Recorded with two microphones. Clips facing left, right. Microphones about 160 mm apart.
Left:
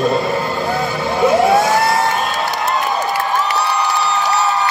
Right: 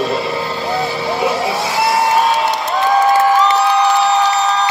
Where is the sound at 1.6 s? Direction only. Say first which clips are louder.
Left 3 dB; 50° left (ahead or behind).